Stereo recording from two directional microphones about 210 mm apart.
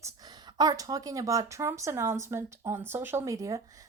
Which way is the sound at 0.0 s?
20° right (ahead or behind).